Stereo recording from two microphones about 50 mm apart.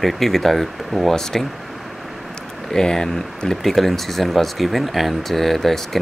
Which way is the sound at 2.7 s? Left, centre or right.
Centre.